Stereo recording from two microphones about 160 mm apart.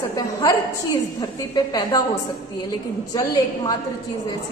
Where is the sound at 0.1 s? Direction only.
20° left (ahead or behind).